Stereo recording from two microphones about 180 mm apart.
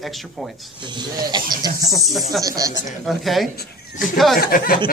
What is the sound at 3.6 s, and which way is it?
Speech, 50° left (ahead or behind).